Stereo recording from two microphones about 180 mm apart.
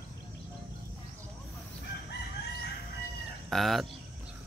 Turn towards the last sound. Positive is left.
turn(degrees=0)  # may be behind; listen again after turning